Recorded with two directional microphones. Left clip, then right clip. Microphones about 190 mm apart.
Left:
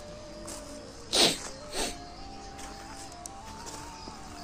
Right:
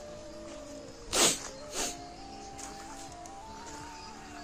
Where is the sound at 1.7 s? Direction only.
15° right (ahead or behind).